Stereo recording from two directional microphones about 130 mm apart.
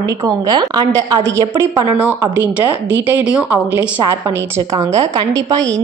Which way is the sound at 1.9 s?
15° right (ahead or behind).